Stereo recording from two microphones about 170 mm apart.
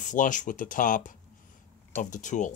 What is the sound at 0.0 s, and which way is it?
Speech, 50° left (ahead or behind).